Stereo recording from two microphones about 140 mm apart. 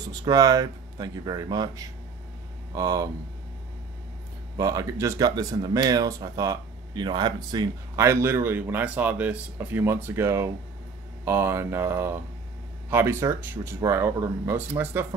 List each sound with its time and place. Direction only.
0.1 s speech: 25° right (ahead or behind)
4.6 s speech: 25° right (ahead or behind)